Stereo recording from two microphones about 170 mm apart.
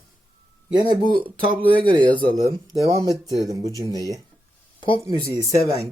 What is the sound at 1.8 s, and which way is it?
Speech, 30° right (ahead or behind).